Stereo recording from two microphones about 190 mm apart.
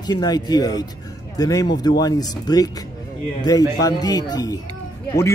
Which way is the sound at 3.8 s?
20° left (ahead or behind).